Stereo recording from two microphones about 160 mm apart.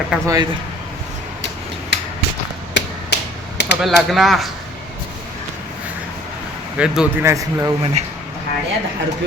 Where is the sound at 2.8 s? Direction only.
90° left.